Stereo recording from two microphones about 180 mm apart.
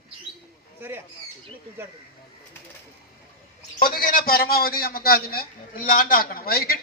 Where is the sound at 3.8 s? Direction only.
55° left (ahead or behind).